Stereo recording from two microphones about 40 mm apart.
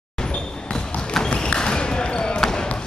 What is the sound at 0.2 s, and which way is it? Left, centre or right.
Basketball bounce, centre.